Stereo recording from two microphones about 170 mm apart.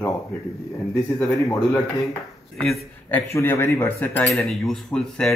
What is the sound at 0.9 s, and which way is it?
Speech, 15° left (ahead or behind).